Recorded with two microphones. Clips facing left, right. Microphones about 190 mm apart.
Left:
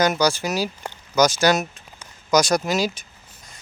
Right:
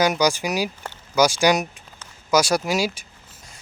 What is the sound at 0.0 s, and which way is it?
Speech, 10° right (ahead or behind).